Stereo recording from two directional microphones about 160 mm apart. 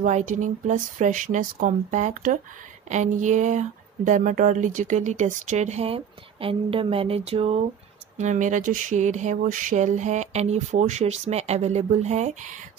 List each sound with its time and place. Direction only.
0.0 s speech: 50° right (ahead or behind)
8.2 s speech: 50° right (ahead or behind)